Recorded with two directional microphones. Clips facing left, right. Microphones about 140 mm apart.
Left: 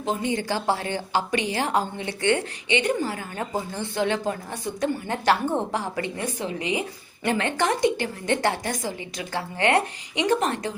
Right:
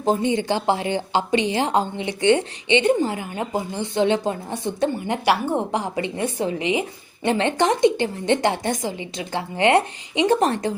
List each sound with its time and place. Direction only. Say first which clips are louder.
0.2 s a woman's voice: right 4 dB; 20° right (ahead or behind)